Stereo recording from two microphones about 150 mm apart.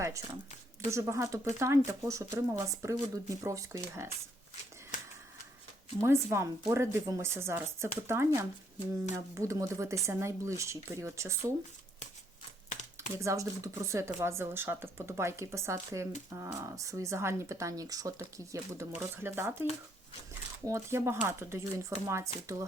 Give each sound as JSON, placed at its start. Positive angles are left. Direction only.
{"t": 0.0, "sound": "a sound", "side_deg": -20}
{"t": 0.9, "sound": "speech", "side_deg": -20}
{"t": 6.0, "sound": "speech", "side_deg": -20}
{"t": 13.0, "sound": "speech", "side_deg": -20}
{"t": 20.7, "sound": "speech", "side_deg": -20}